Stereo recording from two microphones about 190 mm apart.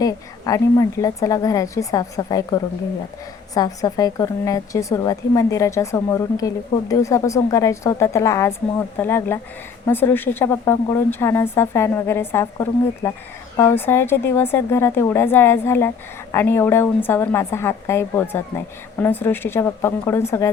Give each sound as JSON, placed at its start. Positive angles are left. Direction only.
{"t": 0.0, "sound": "a woman's voice", "side_deg": 20}